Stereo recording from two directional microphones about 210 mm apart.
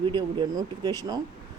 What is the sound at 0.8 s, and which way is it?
Speech, 20° right (ahead or behind).